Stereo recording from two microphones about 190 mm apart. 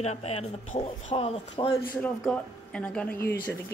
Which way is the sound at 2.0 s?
5° left (ahead or behind).